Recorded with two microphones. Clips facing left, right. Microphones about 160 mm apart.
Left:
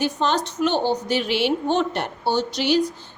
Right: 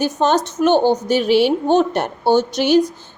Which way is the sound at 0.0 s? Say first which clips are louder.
Right 5 dB; 45° right (ahead or behind).